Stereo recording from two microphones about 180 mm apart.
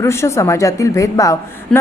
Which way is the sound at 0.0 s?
15° left (ahead or behind).